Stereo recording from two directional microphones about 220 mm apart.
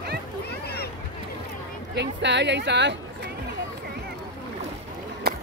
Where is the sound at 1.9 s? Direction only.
50° right (ahead or behind).